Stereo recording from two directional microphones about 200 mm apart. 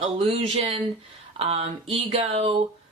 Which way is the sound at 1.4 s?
30° right (ahead or behind).